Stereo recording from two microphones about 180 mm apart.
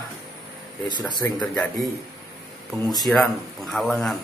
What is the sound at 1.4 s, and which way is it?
Speech, 5° left (ahead or behind).